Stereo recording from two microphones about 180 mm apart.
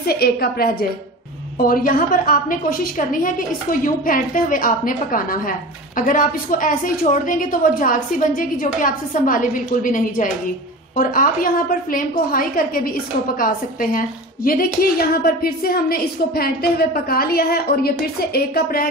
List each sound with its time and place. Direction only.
0.0 s a woman's voice: 60° left (ahead or behind)